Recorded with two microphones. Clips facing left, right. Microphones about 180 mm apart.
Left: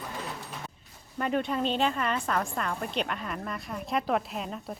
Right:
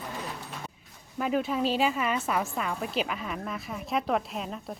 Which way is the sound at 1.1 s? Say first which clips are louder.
Right 1 dB; 5° right (ahead or behind).